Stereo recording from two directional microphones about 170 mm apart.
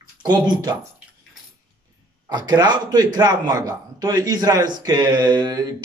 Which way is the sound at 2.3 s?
25° right (ahead or behind).